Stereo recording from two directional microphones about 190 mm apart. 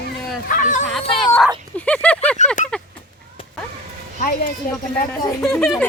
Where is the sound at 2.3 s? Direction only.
40° left (ahead or behind).